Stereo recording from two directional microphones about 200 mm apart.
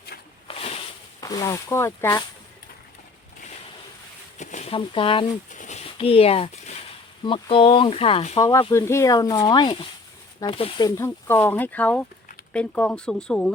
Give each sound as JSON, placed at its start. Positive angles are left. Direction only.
{"t": 0.4, "sound": "a sound", "side_deg": 30}
{"t": 1.2, "sound": "speech", "side_deg": 20}
{"t": 4.4, "sound": "speech", "side_deg": 35}
{"t": 5.5, "sound": "a sound", "side_deg": 35}
{"t": 7.3, "sound": "speech", "side_deg": 25}
{"t": 8.4, "sound": "speech", "side_deg": 15}